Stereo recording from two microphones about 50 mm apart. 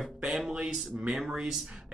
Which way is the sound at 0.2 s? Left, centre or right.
Centre.